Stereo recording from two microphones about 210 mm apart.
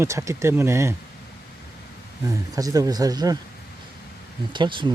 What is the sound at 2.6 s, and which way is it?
Speech, 15° right (ahead or behind).